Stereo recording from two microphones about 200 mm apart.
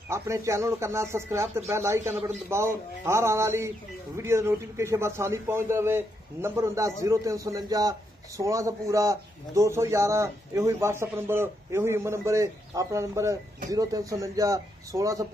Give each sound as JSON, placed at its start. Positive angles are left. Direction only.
{"t": 0.1, "sound": "a man's voice", "side_deg": -15}